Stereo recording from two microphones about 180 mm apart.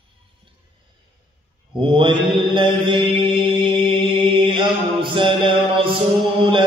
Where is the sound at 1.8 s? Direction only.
30° right (ahead or behind).